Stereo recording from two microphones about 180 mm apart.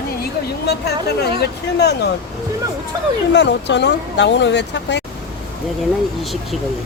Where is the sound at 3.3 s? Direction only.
75° left (ahead or behind).